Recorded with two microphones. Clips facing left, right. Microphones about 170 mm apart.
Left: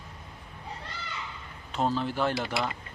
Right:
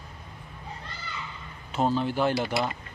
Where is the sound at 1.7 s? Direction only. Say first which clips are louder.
Right 3 dB; 5° right (ahead or behind).